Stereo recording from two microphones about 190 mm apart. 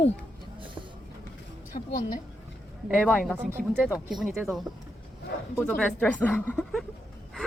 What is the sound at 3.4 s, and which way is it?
Speech, 10° right (ahead or behind).